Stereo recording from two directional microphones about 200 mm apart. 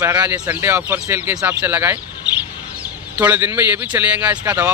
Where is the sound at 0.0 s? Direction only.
10° right (ahead or behind).